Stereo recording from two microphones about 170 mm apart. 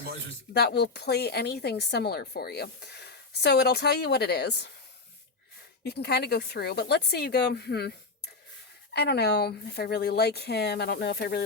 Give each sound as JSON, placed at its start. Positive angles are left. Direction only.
{"t": 0.5, "sound": "a woman's voice", "side_deg": 70}
{"t": 5.8, "sound": "a woman's voice", "side_deg": 70}